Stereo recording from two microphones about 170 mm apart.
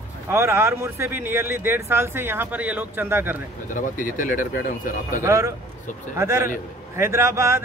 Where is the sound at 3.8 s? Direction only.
50° left (ahead or behind).